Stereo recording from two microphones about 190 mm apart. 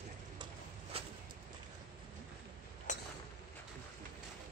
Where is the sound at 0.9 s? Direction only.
30° right (ahead or behind).